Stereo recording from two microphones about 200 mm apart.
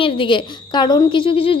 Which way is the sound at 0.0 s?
25° left (ahead or behind).